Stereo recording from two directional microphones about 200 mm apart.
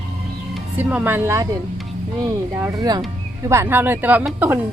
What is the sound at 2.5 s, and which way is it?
Speech, 15° right (ahead or behind).